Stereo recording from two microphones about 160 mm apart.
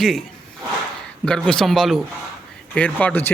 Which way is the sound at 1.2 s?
5° left (ahead or behind).